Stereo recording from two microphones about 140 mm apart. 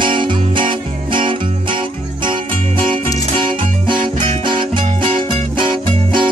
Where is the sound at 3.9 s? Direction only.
35° right (ahead or behind).